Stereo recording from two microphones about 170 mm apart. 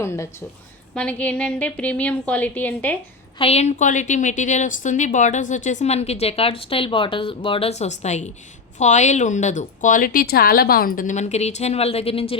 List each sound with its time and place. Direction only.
0.0 s a woman's voice: 15° left (ahead or behind)
3.3 s a woman's voice: 35° left (ahead or behind)